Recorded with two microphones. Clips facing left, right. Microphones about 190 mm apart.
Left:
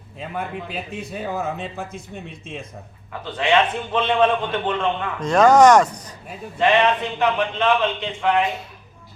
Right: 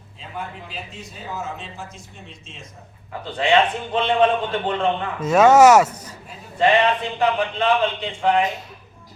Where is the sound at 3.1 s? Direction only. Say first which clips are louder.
Right 1 dB; 30° right (ahead or behind).